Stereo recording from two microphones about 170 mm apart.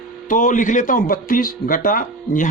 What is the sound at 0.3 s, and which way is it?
A man's voice, 50° left (ahead or behind).